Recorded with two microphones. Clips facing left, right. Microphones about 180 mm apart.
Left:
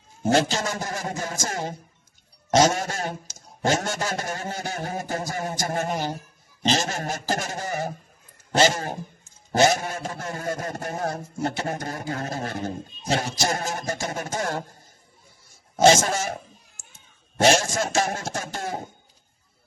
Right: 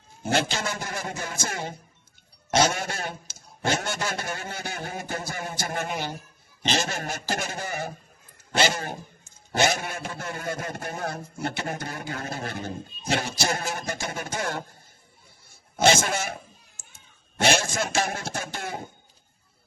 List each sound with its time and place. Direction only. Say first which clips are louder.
0.2 s a man's voice: left 5 dB; 40° left (ahead or behind)
15.7 s a man's voice: left 4 dB; 40° left (ahead or behind)